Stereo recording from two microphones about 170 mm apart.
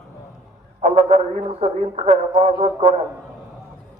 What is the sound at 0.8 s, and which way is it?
Speech, 40° right (ahead or behind).